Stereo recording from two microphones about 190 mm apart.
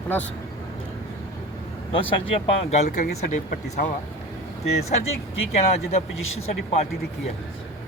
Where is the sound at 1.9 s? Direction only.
35° left (ahead or behind).